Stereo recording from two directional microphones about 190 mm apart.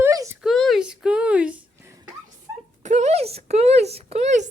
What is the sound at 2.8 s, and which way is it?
Speech, 40° right (ahead or behind).